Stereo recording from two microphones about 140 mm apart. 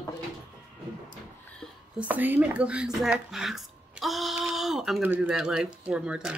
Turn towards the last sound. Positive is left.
turn(degrees=-5)  # may be behind; listen again after turning